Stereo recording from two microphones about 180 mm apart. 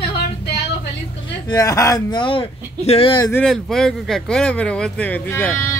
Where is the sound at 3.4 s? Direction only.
Centre (ahead or behind).